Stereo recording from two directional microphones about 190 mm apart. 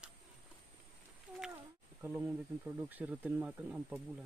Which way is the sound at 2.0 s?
10° right (ahead or behind).